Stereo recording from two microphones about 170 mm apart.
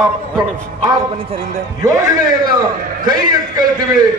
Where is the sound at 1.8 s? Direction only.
20° right (ahead or behind).